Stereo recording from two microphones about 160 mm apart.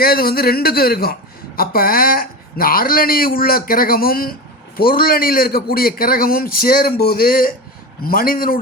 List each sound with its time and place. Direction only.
0.0 s a man's voice: 70° left (ahead or behind)